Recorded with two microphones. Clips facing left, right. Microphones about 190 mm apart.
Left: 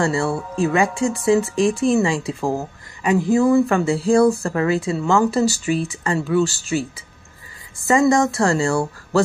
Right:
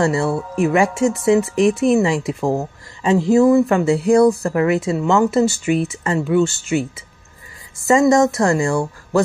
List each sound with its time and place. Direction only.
0.0 s speech: 20° right (ahead or behind)